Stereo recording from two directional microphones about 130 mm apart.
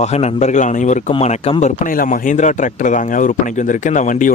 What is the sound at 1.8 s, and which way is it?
Speech, 85° left.